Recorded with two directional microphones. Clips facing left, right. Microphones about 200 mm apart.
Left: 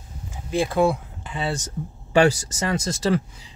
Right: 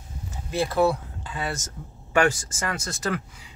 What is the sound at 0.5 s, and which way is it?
Speech, 15° left (ahead or behind).